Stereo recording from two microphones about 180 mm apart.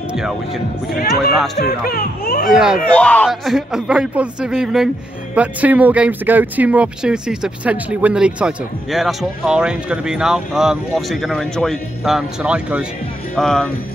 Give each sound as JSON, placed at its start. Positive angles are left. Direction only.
{"t": 0.1, "sound": "speech", "side_deg": -5}
{"t": 0.9, "sound": "speech", "side_deg": 55}
{"t": 2.5, "sound": "speech", "side_deg": -5}
{"t": 2.9, "sound": "speech", "side_deg": 5}